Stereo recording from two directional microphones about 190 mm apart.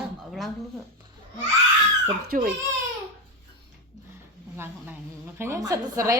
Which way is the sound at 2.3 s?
45° right (ahead or behind).